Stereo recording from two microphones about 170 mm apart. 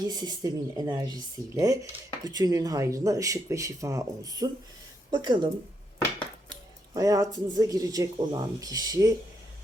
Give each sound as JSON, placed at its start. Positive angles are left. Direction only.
{"t": 0.1, "sound": "speech", "side_deg": -25}
{"t": 6.5, "sound": "speech", "side_deg": -20}